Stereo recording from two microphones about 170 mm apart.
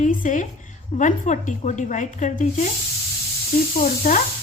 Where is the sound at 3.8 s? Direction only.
50° left (ahead or behind).